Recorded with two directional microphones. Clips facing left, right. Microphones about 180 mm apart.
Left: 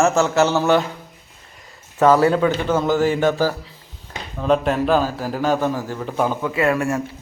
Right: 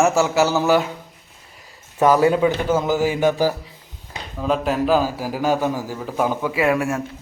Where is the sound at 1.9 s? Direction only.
15° right (ahead or behind).